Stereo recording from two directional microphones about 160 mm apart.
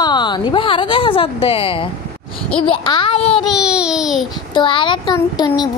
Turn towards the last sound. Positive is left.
turn(degrees=25)  # may be behind; listen again after turning